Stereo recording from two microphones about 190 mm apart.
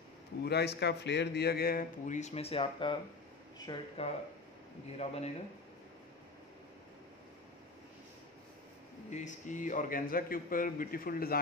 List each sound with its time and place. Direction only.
0.5 s speech: 60° left (ahead or behind); by 5.3 s 35° left (ahead or behind)
9.1 s speech: 40° left (ahead or behind)